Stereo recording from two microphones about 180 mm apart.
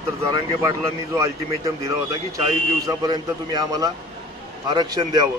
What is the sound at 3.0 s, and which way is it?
A man's voice, 20° right (ahead or behind).